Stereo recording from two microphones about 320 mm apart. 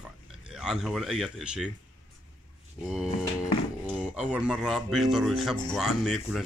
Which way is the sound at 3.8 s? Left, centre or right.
Centre.